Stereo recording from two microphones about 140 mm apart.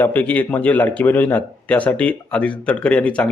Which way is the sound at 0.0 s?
15° left (ahead or behind).